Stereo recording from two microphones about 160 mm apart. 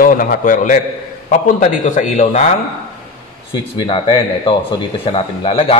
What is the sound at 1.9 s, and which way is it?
Speech, 50° left (ahead or behind).